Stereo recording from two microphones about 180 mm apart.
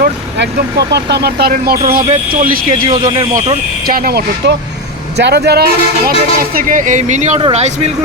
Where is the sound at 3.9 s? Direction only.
55° right (ahead or behind).